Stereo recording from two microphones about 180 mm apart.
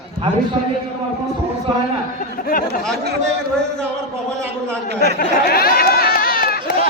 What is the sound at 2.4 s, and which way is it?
Speech, 55° left (ahead or behind).